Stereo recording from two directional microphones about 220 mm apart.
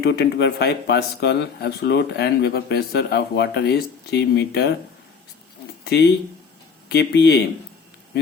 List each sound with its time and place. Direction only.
0.0 s a man's voice: 50° left (ahead or behind)
5.8 s a man's voice: 50° left (ahead or behind)